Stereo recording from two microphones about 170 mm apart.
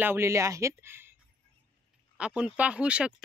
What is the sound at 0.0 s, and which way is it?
Speech, 15° right (ahead or behind).